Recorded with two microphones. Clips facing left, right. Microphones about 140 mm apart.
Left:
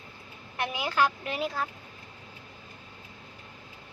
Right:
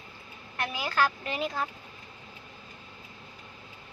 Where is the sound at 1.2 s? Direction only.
Centre (ahead or behind).